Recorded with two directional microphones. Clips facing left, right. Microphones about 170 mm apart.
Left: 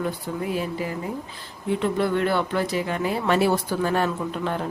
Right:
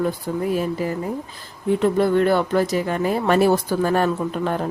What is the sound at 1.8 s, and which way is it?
Speech, 40° right (ahead or behind).